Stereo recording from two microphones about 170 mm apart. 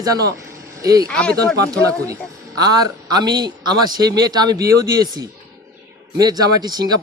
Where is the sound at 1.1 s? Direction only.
5° left (ahead or behind).